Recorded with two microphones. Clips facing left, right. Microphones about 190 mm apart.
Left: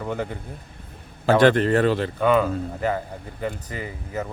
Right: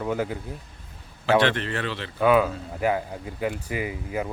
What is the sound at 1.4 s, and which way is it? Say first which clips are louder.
Speech: left 8 dB; 45° left (ahead or behind).